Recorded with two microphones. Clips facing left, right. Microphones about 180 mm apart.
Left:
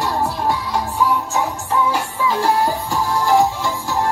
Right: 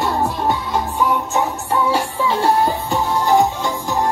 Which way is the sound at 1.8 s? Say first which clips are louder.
Right 2 dB; 30° right (ahead or behind).